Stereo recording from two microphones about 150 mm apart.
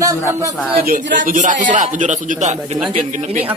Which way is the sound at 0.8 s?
65° right (ahead or behind).